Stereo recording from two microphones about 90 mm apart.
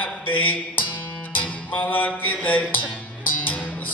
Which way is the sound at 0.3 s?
20° left (ahead or behind).